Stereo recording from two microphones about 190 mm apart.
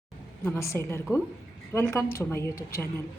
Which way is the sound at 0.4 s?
15° left (ahead or behind).